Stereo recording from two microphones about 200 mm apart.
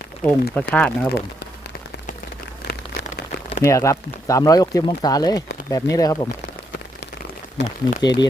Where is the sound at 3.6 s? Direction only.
15° left (ahead or behind).